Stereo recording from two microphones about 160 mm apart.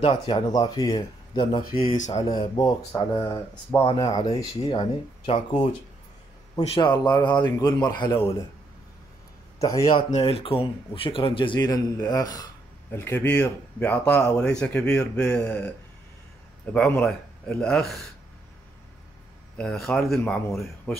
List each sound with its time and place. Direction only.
0.0 s speech: 30° left (ahead or behind)
1.9 s speech: 50° left (ahead or behind)
2.2 s speech: 25° left (ahead or behind)
5.2 s a man's voice: 35° left (ahead or behind)
10.1 s a man's voice: 35° left (ahead or behind); by 15.7 s 5° left (ahead or behind)
16.7 s speech: 5° left (ahead or behind)
19.5 s speech: 5° left (ahead or behind)